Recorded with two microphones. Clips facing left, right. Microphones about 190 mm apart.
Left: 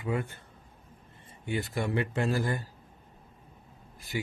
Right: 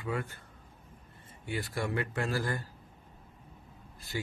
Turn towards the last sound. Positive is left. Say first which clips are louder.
# left 3 dB
turn(degrees=15)  # may be behind; listen again after turning